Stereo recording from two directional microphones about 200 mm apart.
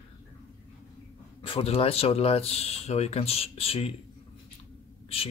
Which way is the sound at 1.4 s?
30° left (ahead or behind).